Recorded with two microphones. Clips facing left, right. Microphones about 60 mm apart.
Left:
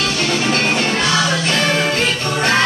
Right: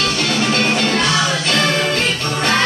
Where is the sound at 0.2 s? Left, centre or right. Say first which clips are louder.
Left 1 dB; centre.